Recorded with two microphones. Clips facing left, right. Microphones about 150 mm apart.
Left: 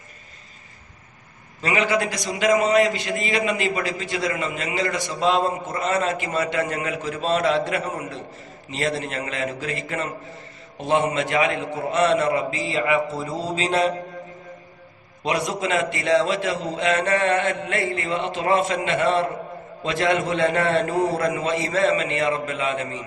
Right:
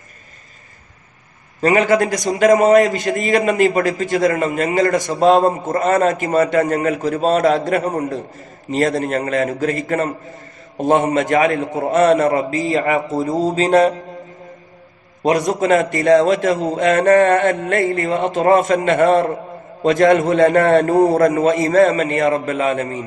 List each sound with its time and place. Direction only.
1.6 s a man's voice: 45° right (ahead or behind)
15.2 s a man's voice: 45° right (ahead or behind)